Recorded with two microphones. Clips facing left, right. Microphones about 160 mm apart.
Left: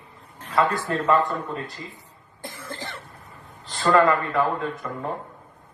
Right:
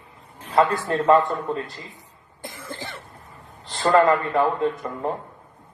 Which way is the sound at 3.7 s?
30° right (ahead or behind).